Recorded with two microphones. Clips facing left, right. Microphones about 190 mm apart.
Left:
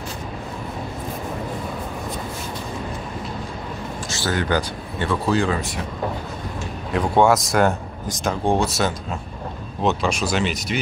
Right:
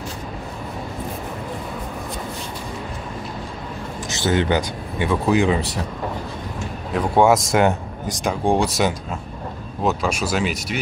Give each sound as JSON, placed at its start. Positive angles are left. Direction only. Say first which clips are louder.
{"t": 4.1, "sound": "speech", "louder": "right 3 dB", "side_deg": -20}
{"t": 7.2, "sound": "speech", "louder": "right 1 dB", "side_deg": -15}